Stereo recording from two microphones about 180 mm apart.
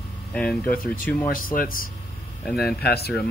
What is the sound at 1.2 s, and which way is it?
Speech, 50° left (ahead or behind).